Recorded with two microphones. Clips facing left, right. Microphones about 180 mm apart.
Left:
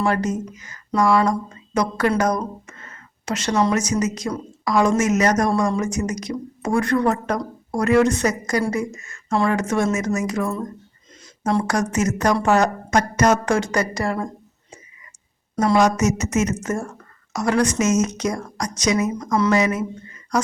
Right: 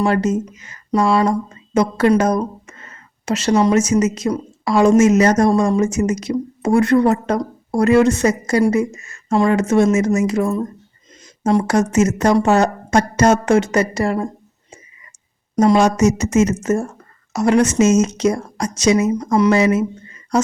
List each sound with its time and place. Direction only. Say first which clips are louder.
0.0 s a woman's voice: right 4 dB; 25° right (ahead or behind)
15.5 s a woman's voice: right 4 dB; 25° right (ahead or behind)